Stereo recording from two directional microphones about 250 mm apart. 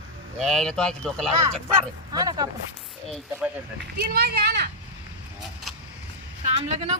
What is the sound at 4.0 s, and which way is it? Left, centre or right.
Speech, right.